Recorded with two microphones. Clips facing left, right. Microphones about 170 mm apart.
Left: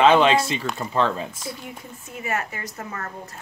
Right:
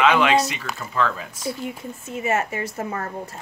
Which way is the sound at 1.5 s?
25° right (ahead or behind).